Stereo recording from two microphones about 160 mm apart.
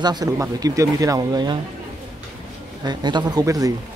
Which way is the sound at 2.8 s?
25° right (ahead or behind).